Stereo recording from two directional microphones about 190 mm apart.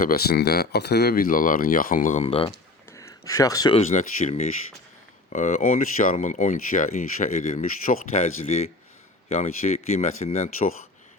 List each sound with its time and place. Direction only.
0.0 s speech: 55° left (ahead or behind); by 2.5 s 30° left (ahead or behind)
2.9 s a sound: 15° left (ahead or behind)
3.8 s speech: 35° left (ahead or behind)